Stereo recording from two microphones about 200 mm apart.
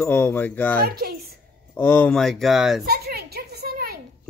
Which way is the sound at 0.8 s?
50° right (ahead or behind).